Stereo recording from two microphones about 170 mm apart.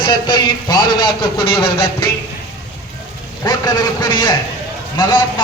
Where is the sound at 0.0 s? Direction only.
25° left (ahead or behind).